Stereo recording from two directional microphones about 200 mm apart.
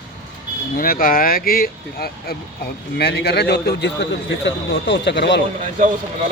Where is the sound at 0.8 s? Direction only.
45° left (ahead or behind).